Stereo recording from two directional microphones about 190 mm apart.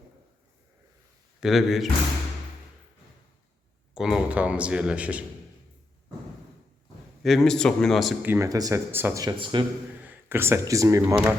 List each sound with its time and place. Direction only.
1.4 s speech: centre (ahead or behind)
3.9 s speech: 5° right (ahead or behind)
7.2 s speech: centre (ahead or behind)
8.3 s speech: 15° right (ahead or behind)
10.0 s speech: 10° right (ahead or behind)